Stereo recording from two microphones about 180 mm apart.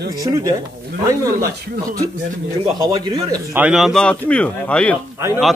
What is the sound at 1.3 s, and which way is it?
Speech, 55° right (ahead or behind).